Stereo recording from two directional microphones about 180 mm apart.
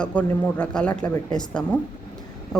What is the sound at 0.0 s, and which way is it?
Speech, 10° left (ahead or behind).